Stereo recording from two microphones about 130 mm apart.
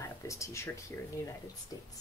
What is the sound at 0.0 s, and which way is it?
Speech, 25° left (ahead or behind).